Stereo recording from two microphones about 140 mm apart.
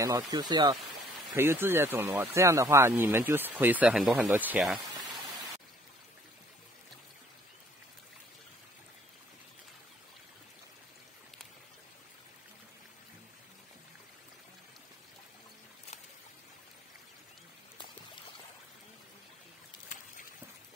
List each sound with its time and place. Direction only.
0.0 s speech: 30° right (ahead or behind)
1.3 s speech: 15° right (ahead or behind); by 4.3 s centre (ahead or behind)
4.3 s speech: 10° right (ahead or behind)
4.9 s a sound: 30° right (ahead or behind)